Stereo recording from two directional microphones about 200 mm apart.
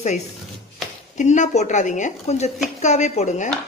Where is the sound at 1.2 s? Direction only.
35° left (ahead or behind).